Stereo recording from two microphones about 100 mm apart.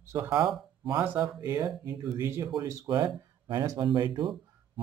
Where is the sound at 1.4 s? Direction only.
20° right (ahead or behind); by 4.3 s 50° right (ahead or behind).